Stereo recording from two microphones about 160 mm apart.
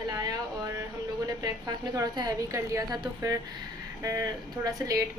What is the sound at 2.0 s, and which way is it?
A woman's voice, 25° right (ahead or behind).